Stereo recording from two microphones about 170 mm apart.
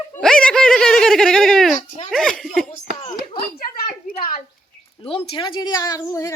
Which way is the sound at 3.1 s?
30° left (ahead or behind).